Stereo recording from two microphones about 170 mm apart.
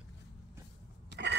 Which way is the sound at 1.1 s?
90° right.